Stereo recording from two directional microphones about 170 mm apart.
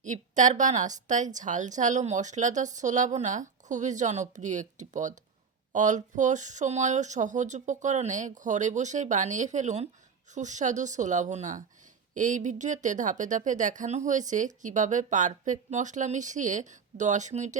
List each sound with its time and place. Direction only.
0.0 s speech: 45° right (ahead or behind)